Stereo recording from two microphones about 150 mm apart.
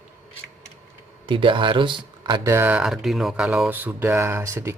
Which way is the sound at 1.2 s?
35° right (ahead or behind).